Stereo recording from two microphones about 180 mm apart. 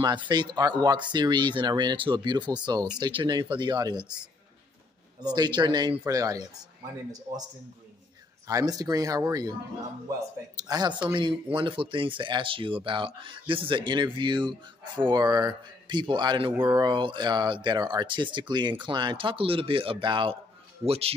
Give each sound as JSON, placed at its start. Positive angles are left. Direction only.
{"t": 0.0, "sound": "speech", "side_deg": -25}
{"t": 5.2, "sound": "speech", "side_deg": -25}
{"t": 8.5, "sound": "speech", "side_deg": -20}